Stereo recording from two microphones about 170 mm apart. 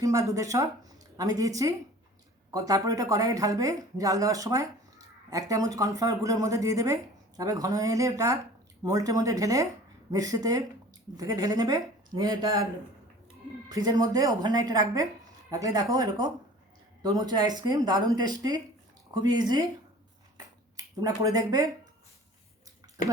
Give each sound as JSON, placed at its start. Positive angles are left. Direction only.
{"t": 0.0, "sound": "speech", "side_deg": -20}
{"t": 13.7, "sound": "speech", "side_deg": -25}
{"t": 20.7, "sound": "speech", "side_deg": -20}